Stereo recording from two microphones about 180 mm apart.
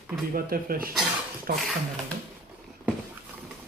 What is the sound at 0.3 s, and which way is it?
Speech, 55° right (ahead or behind).